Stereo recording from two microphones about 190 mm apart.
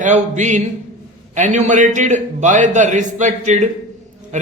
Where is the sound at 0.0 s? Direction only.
40° right (ahead or behind).